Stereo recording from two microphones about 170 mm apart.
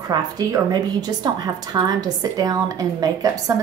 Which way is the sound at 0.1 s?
25° right (ahead or behind).